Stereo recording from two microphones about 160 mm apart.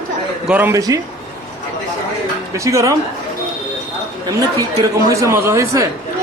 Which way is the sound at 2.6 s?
20° right (ahead or behind).